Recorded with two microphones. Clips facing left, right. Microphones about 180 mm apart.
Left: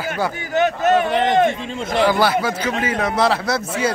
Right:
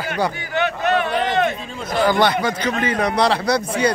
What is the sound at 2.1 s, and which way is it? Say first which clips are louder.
Speech: right 2 dB; 5° left (ahead or behind).